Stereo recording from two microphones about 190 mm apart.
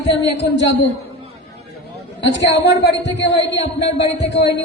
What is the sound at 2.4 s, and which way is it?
Speech, 65° left (ahead or behind).